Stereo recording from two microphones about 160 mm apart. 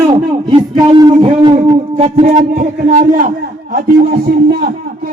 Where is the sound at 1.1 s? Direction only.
35° right (ahead or behind).